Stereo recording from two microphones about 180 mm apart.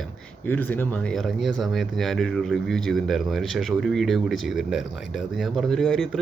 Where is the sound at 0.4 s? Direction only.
10° left (ahead or behind).